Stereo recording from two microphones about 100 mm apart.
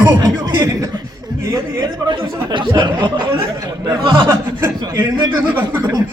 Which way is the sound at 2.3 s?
50° right (ahead or behind).